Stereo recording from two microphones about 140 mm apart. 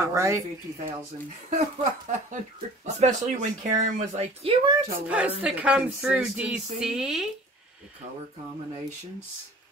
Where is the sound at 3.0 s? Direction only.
60° right (ahead or behind).